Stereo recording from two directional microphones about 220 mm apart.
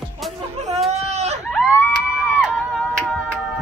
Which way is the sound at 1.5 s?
5° left (ahead or behind).